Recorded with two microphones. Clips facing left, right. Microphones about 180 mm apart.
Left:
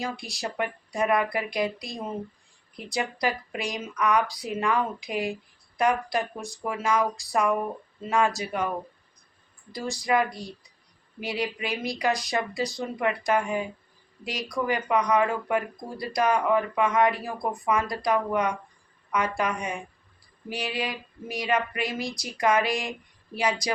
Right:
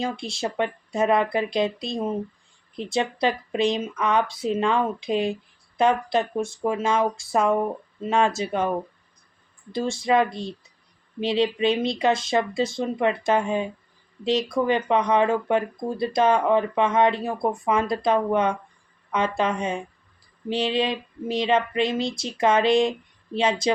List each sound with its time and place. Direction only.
0.0 s speech: 25° right (ahead or behind)
9.7 s speech: 25° right (ahead or behind)